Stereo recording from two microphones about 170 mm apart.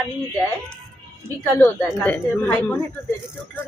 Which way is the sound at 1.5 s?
15° left (ahead or behind).